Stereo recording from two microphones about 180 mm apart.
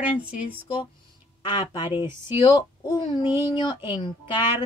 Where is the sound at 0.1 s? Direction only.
5° right (ahead or behind).